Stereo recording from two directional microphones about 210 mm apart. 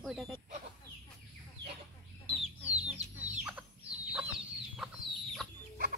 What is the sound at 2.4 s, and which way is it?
Chicken, 5° right (ahead or behind).